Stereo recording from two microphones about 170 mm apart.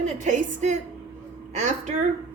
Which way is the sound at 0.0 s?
45° right (ahead or behind).